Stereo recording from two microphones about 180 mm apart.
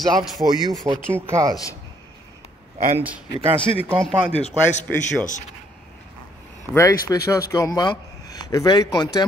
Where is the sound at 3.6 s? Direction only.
30° left (ahead or behind).